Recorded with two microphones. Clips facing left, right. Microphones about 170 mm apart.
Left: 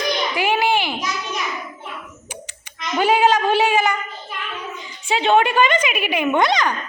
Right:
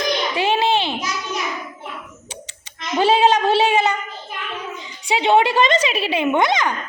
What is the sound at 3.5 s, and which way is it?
Child singing, 20° right (ahead or behind).